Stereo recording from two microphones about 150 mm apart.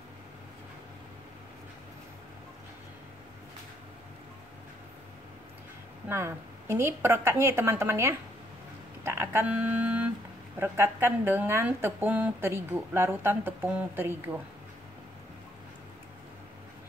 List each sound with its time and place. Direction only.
6.0 s a woman's voice: 15° right (ahead or behind)